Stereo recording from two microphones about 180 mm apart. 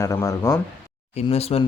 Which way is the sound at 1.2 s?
35° left (ahead or behind).